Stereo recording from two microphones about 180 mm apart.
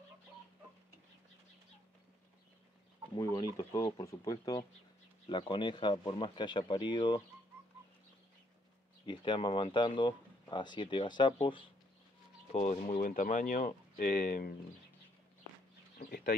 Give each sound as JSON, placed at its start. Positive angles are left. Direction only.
{"t": 3.2, "sound": "speech", "side_deg": 20}
{"t": 9.0, "sound": "speech", "side_deg": 25}
{"t": 13.0, "sound": "speech", "side_deg": 50}
{"t": 16.0, "sound": "speech", "side_deg": 50}